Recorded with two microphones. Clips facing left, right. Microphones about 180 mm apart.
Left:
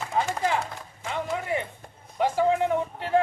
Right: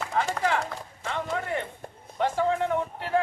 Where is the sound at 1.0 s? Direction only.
10° left (ahead or behind).